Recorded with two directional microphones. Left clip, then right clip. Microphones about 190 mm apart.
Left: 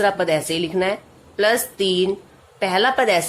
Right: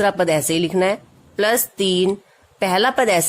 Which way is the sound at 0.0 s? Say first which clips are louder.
Right 1 dB; 40° right (ahead or behind).